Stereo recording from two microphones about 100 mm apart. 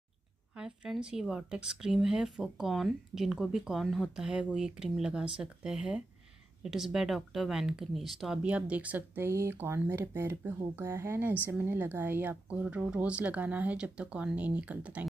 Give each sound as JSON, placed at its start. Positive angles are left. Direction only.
{"t": 0.6, "sound": "speech", "side_deg": -10}
{"t": 8.4, "sound": "speech", "side_deg": -10}